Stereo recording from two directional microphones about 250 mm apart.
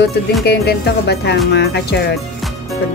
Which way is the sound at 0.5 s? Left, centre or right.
Left.